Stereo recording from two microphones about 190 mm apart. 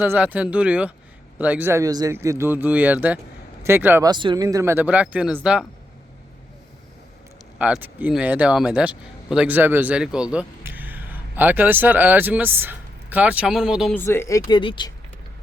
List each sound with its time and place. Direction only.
0.0 s a man's voice: 10° right (ahead or behind)
4.1 s a man's voice: 25° right (ahead or behind); by 5.6 s 5° right (ahead or behind)
7.6 s speech: 10° right (ahead or behind)
13.9 s speech: 15° left (ahead or behind)